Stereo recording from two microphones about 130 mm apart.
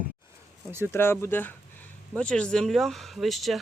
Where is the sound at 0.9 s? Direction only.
20° left (ahead or behind).